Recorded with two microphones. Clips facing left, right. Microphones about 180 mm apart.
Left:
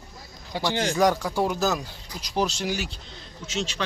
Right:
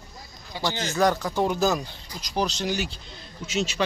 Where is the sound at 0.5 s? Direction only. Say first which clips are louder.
Left 1 dB; 70° left (ahead or behind).